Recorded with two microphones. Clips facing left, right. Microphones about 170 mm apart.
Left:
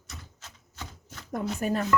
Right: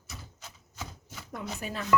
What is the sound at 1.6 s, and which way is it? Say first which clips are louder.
Speech: left 11 dB; 45° left (ahead or behind).